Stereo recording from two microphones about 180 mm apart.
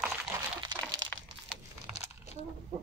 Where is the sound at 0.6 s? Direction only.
25° right (ahead or behind).